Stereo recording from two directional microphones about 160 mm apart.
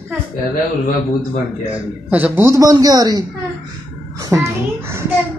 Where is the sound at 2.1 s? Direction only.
10° right (ahead or behind).